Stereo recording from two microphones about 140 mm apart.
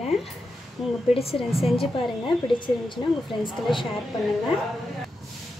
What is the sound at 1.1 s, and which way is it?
Speech, 45° left (ahead or behind).